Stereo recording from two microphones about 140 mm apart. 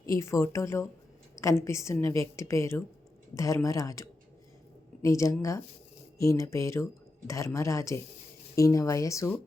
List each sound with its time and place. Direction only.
0.0 s a woman's voice: 20° left (ahead or behind)